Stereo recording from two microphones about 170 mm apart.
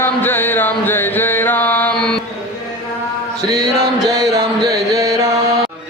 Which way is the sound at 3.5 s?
20° right (ahead or behind).